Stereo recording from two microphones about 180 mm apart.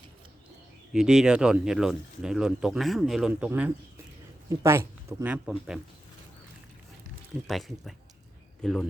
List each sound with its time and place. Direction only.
0.9 s speech: 5° right (ahead or behind)
7.4 s speech: centre (ahead or behind)